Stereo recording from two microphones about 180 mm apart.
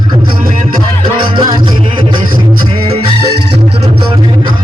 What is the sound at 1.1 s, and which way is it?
Music, 30° right (ahead or behind).